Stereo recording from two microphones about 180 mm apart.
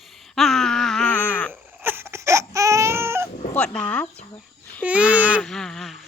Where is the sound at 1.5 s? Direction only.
10° right (ahead or behind).